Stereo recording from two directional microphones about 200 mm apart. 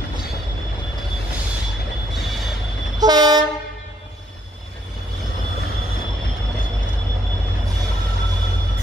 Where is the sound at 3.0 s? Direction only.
20° right (ahead or behind).